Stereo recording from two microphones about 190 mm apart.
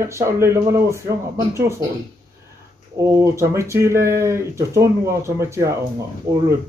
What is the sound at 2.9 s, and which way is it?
Speech, 15° right (ahead or behind).